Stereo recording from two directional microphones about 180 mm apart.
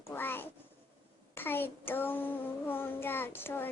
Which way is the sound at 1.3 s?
10° left (ahead or behind).